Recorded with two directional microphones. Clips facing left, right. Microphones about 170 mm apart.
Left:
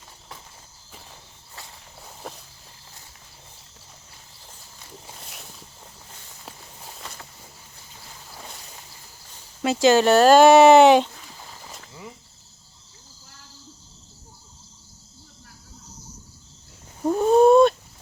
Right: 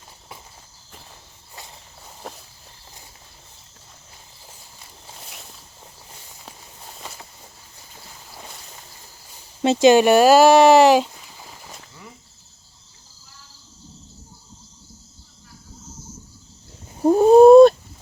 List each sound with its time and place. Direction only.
2.2 s walk: centre (ahead or behind)
9.6 s speech: 20° right (ahead or behind); by 11.1 s centre (ahead or behind)
17.0 s a sound: 35° right (ahead or behind)